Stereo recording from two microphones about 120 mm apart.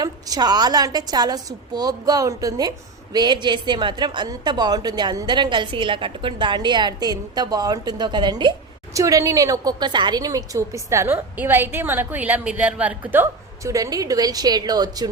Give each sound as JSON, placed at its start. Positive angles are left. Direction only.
{"t": 0.0, "sound": "a woman's voice", "side_deg": -35}
{"t": 8.9, "sound": "a woman's voice", "side_deg": -25}